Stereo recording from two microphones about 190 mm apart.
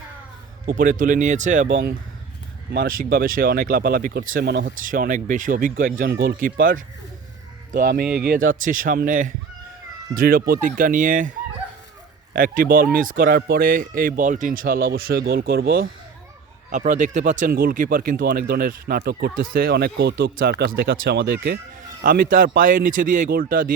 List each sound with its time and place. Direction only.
0.6 s speech: 40° right (ahead or behind)
2.7 s speech: 50° right (ahead or behind)
16.6 s speech: 45° right (ahead or behind)